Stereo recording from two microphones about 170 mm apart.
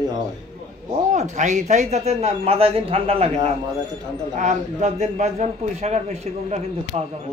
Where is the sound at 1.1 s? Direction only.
45° right (ahead or behind).